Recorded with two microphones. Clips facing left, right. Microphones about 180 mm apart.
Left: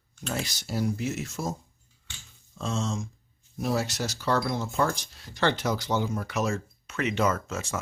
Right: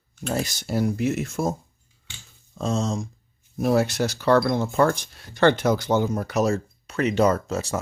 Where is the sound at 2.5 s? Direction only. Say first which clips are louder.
Right 5 dB; 40° right (ahead or behind).